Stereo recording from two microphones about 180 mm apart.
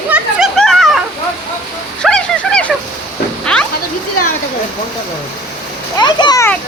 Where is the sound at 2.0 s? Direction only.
5° left (ahead or behind).